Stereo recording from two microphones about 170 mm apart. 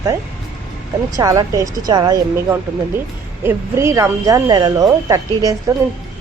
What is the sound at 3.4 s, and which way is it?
Speech, 15° right (ahead or behind).